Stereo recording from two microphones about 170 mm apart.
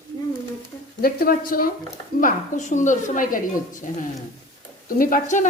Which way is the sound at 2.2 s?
45° left (ahead or behind).